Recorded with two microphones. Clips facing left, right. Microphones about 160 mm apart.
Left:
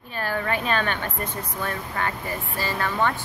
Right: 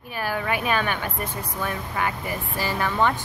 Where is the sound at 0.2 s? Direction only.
10° right (ahead or behind).